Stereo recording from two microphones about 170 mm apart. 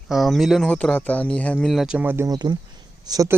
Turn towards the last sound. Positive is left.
turn(degrees=-20)  # may be behind; listen again after turning